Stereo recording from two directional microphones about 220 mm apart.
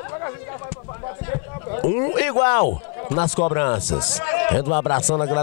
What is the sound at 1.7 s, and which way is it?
A man's voice, 20° left (ahead or behind).